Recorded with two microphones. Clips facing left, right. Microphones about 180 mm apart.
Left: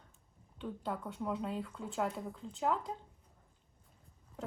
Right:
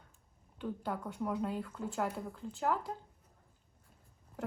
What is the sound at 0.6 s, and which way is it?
Speech, centre (ahead or behind).